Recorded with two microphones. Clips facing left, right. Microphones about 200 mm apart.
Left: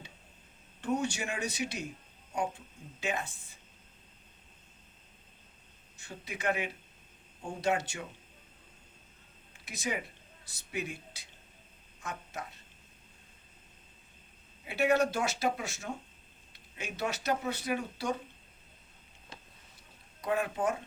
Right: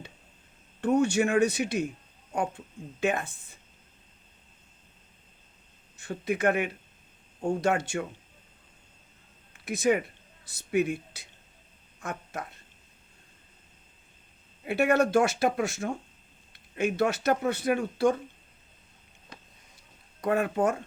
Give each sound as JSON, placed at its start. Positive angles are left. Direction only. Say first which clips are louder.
{"t": 0.8, "sound": "speech", "louder": "right 9 dB", "side_deg": -55}
{"t": 6.0, "sound": "speech", "louder": "right 11 dB", "side_deg": -55}
{"t": 9.5, "sound": "speech", "louder": "right 12 dB", "side_deg": -55}
{"t": 14.6, "sound": "speech", "louder": "right 4 dB", "side_deg": -55}
{"t": 20.2, "sound": "speech", "louder": "right 6 dB", "side_deg": -50}